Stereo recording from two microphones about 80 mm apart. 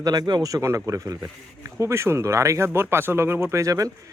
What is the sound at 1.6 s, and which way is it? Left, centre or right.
Speech, right.